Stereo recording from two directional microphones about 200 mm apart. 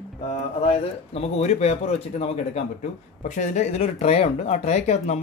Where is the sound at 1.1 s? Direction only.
30° left (ahead or behind).